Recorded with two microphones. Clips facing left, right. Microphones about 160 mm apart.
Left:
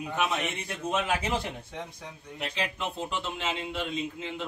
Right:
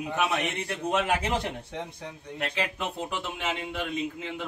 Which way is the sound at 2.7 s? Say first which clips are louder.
Right 1 dB; 15° right (ahead or behind).